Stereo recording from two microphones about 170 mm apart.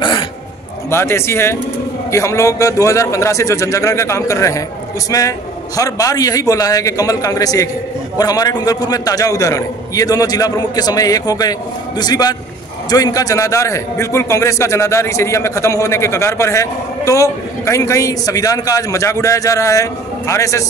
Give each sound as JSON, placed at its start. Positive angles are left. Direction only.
{"t": 0.8, "sound": "a man's voice", "side_deg": 15}